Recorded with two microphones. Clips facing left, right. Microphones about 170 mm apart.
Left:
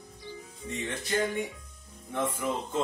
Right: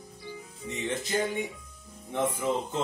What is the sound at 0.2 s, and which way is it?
Music, 20° right (ahead or behind).